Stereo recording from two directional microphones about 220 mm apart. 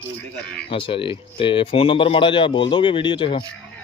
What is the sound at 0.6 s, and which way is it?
Speech, 25° left (ahead or behind).